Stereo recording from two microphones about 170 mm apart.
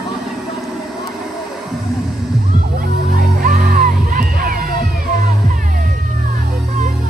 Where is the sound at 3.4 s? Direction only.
50° right (ahead or behind).